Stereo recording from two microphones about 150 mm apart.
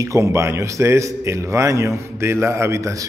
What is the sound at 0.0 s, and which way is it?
A man's voice, 20° right (ahead or behind).